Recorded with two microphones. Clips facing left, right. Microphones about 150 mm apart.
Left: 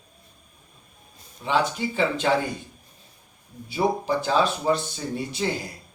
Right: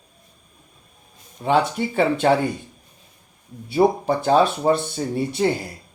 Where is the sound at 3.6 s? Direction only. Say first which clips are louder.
Right 6 dB; 60° right (ahead or behind).